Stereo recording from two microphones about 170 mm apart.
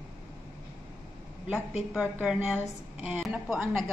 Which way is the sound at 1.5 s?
5° right (ahead or behind).